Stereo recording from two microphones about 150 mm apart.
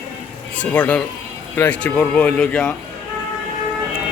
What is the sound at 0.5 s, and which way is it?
Speech, 10° left (ahead or behind).